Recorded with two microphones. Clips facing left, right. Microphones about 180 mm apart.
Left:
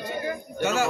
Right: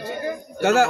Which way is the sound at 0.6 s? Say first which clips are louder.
Right 7 dB; 60° right (ahead or behind).